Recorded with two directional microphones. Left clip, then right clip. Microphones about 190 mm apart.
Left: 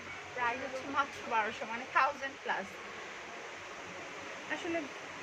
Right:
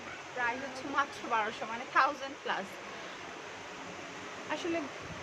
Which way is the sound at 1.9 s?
15° right (ahead or behind).